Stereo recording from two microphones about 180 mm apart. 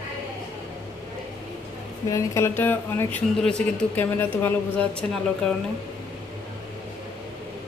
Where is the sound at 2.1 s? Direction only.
15° left (ahead or behind).